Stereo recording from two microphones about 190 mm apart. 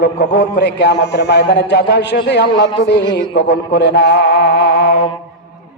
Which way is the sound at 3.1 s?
25° left (ahead or behind).